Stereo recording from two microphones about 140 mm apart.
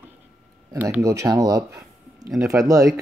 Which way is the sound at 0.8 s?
15° right (ahead or behind).